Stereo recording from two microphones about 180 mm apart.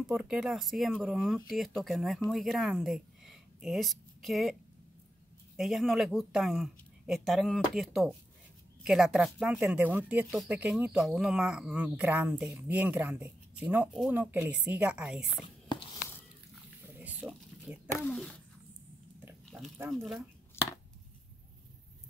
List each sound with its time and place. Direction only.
0.0 s a woman's voice: 5° right (ahead or behind)
5.6 s speech: centre (ahead or behind)
15.4 s whispering: 25° left (ahead or behind)
16.8 s a sound: 10° right (ahead or behind)
18.0 s speech: 5° left (ahead or behind)
19.2 s a sound: 10° right (ahead or behind)